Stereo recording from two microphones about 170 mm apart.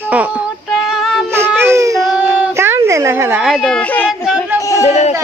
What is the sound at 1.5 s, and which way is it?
Baby cry, 15° right (ahead or behind).